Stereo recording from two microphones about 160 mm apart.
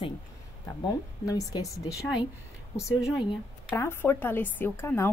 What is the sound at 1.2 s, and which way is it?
Speech, 20° left (ahead or behind).